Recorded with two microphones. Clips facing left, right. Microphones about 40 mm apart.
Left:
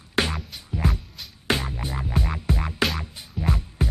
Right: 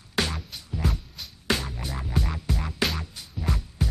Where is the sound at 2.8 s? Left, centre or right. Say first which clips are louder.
Left 3 dB; centre.